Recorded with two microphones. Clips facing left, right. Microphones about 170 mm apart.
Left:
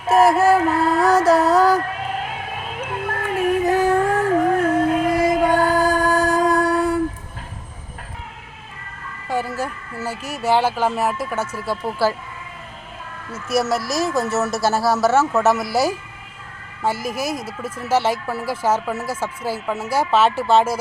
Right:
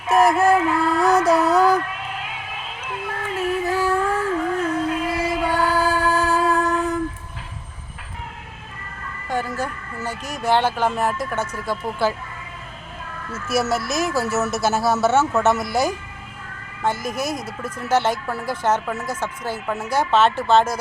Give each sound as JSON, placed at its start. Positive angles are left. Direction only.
{"t": 0.6, "sound": "music", "side_deg": 40}
{"t": 0.9, "sound": "music", "side_deg": 0}
{"t": 1.8, "sound": "a sound", "side_deg": 40}
{"t": 3.6, "sound": "music", "side_deg": 20}
{"t": 3.8, "sound": "music", "side_deg": 45}
{"t": 5.9, "sound": "a sound", "side_deg": 15}
{"t": 6.7, "sound": "music", "side_deg": 10}
{"t": 9.3, "sound": "speech", "side_deg": 5}
{"t": 13.5, "sound": "speech", "side_deg": 0}